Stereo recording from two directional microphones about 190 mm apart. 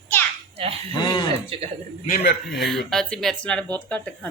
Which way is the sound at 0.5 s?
30° right (ahead or behind).